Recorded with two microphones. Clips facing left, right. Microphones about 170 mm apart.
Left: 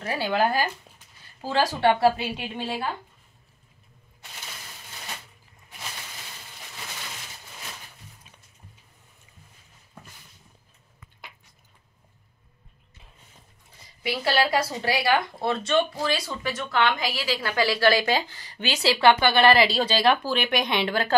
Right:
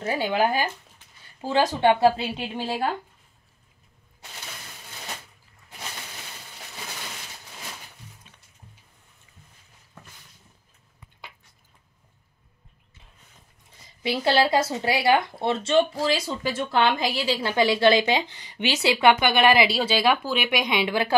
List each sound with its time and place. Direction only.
0.0 s speech: 25° right (ahead or behind)
0.3 s speech: 15° right (ahead or behind)
14.0 s speech: 25° right (ahead or behind)